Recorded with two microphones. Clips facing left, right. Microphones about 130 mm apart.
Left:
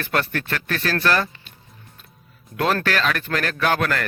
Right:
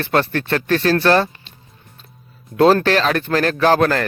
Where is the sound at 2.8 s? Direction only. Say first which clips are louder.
Right 6 dB; 30° right (ahead or behind).